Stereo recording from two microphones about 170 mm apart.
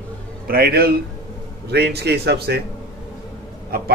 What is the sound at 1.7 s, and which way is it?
Speech, 75° right (ahead or behind).